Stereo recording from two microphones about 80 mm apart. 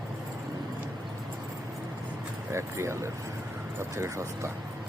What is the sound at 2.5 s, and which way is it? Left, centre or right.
Speech, right.